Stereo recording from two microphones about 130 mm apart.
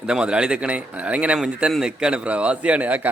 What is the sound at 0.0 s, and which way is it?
Speech, 5° right (ahead or behind).